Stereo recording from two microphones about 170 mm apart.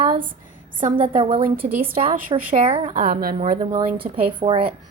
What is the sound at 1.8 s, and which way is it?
Speech, 55° right (ahead or behind).